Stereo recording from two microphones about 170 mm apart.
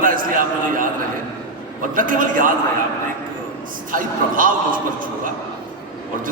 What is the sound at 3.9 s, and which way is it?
Speech, 55° right (ahead or behind).